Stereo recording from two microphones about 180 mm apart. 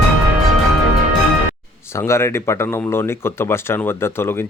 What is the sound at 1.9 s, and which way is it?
Speech, 15° left (ahead or behind).